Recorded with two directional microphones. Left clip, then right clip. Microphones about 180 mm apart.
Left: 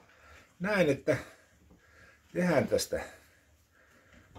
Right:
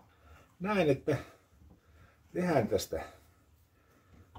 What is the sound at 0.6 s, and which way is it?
Speech, 20° left (ahead or behind).